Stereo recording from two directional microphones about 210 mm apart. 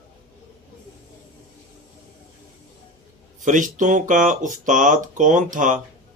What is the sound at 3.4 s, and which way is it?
Speech, 35° right (ahead or behind).